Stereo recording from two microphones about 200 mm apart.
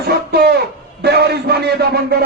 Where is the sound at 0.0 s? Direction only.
50° right (ahead or behind).